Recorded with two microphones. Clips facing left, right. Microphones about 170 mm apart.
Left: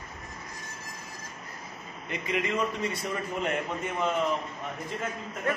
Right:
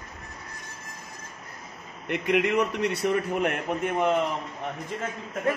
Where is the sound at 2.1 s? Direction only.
65° right (ahead or behind).